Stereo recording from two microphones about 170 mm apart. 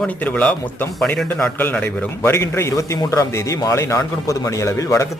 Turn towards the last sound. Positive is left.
turn(degrees=20)  # may be behind; listen again after turning